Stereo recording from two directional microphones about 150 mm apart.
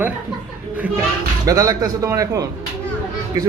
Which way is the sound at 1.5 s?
20° right (ahead or behind).